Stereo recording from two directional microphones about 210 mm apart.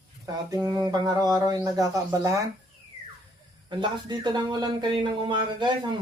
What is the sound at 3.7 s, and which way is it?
Speech, 20° right (ahead or behind).